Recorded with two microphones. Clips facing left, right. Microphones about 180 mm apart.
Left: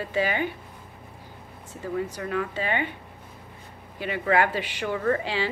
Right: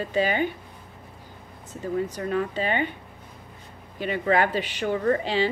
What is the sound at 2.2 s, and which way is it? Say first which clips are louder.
Speech: right 3 dB; 35° right (ahead or behind).